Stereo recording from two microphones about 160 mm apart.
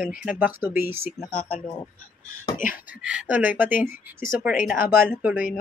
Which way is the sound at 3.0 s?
10° right (ahead or behind).